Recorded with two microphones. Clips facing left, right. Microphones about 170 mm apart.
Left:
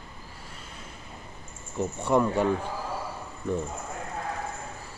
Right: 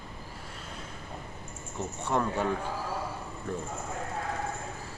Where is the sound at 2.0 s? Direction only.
10° left (ahead or behind).